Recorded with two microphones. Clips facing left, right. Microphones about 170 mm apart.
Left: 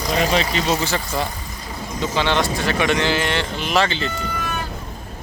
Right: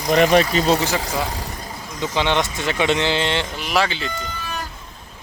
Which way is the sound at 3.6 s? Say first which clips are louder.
Left 3 dB; 5° right (ahead or behind).